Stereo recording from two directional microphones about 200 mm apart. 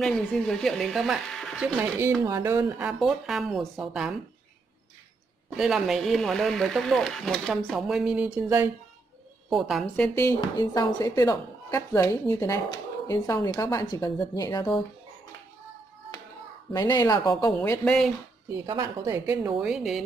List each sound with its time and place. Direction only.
0.0 s speech: 5° left (ahead or behind)
1.8 s a woman's voice: 10° right (ahead or behind)
2.9 s speech: centre (ahead or behind)
5.6 s speech: centre (ahead or behind)
10.4 s a woman's voice: 20° left (ahead or behind)
16.7 s a woman's voice: 20° left (ahead or behind)
17.6 s speech: 5° left (ahead or behind)
18.7 s a woman's voice: 15° right (ahead or behind)
19.6 s speech: centre (ahead or behind)